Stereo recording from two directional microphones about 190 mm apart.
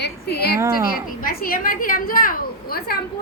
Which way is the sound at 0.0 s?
60° left (ahead or behind).